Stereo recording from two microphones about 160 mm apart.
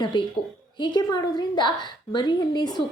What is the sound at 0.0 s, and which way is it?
A woman's voice, 30° left (ahead or behind).